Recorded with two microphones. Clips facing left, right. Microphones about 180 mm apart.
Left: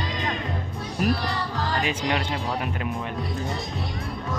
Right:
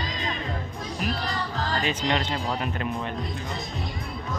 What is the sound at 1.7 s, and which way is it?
Speech, 10° left (ahead or behind).